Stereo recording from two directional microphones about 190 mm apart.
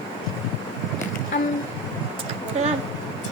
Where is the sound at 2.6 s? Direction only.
35° right (ahead or behind).